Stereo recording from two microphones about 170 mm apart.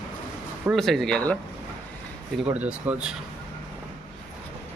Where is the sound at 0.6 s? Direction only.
Centre (ahead or behind).